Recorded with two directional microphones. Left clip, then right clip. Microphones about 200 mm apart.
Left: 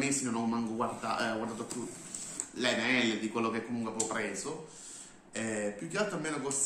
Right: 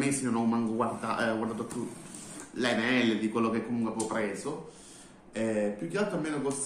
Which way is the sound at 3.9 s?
15° left (ahead or behind).